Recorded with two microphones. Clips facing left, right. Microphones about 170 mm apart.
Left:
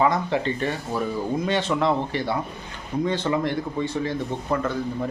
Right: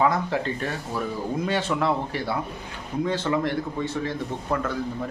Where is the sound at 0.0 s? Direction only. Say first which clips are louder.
Left 1 dB; centre (ahead or behind).